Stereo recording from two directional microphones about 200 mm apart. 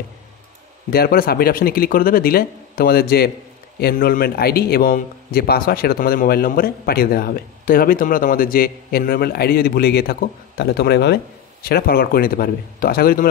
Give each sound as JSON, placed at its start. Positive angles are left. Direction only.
{"t": 0.8, "sound": "a man's voice", "side_deg": 50}